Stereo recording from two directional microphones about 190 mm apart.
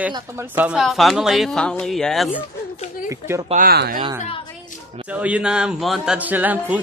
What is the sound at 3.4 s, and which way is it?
Speech, 45° right (ahead or behind).